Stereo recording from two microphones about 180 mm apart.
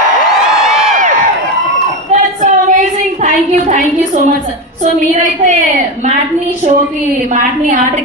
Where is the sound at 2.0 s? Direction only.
45° right (ahead or behind).